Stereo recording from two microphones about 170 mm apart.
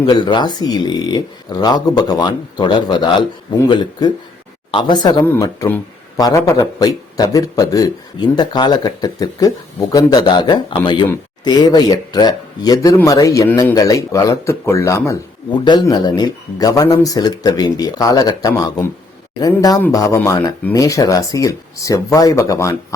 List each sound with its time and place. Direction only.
0.0 s speech: 25° left (ahead or behind)
4.7 s speech: 25° left (ahead or behind)